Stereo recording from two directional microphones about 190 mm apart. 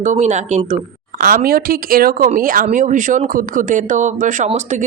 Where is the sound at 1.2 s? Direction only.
50° right (ahead or behind).